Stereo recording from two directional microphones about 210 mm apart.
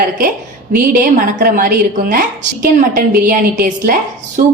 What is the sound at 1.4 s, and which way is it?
A woman's voice, 45° right (ahead or behind).